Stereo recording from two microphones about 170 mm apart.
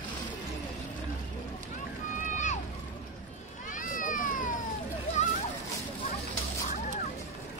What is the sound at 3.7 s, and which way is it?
Cat, 50° left (ahead or behind).